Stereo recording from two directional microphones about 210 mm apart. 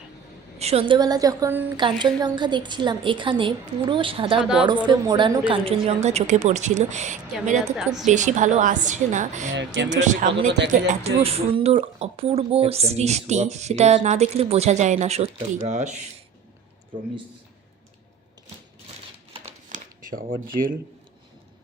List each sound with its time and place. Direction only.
0.6 s a woman's voice: 30° right (ahead or behind)
4.4 s a woman's voice: 5° right (ahead or behind)
4.9 s speech: 20° right (ahead or behind)
7.8 s a woman's voice: centre (ahead or behind)
8.0 s speech: 35° right (ahead or behind)
19.7 s speech: 40° right (ahead or behind)